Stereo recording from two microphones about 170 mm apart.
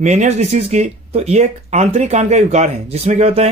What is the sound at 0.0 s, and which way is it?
Speech, 45° right (ahead or behind).